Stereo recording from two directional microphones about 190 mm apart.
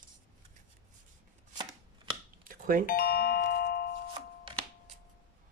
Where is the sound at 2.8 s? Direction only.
50° left (ahead or behind).